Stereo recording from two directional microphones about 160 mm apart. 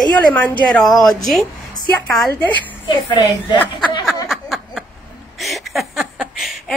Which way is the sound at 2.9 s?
30° left (ahead or behind).